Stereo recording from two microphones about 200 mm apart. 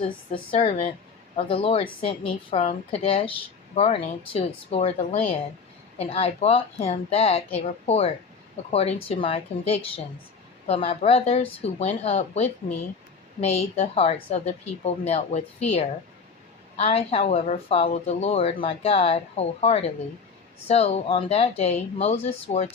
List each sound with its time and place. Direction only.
0.5 s a woman's voice: 25° left (ahead or behind)